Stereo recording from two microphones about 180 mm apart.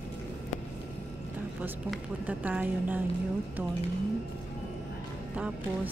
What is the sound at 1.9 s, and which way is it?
A woman's voice, 10° right (ahead or behind).